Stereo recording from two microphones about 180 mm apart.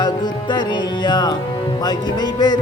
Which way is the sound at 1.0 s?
25° left (ahead or behind).